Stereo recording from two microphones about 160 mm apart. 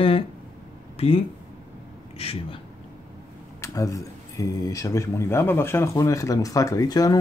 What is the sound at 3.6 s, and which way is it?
Speech, 20° left (ahead or behind).